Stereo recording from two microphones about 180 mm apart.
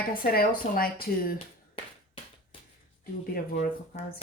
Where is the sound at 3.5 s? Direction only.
40° left (ahead or behind).